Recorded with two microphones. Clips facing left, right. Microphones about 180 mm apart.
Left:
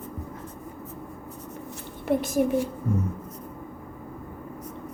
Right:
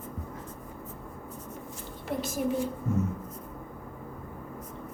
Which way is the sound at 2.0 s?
60° left (ahead or behind).